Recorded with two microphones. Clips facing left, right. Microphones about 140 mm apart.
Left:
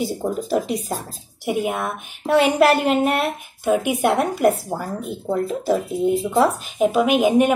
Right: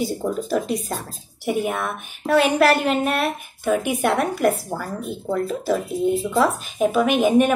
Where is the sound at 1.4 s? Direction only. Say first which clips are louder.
Left 1 dB; 15° left (ahead or behind).